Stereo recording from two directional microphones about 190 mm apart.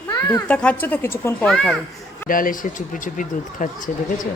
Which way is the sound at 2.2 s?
45° left (ahead or behind).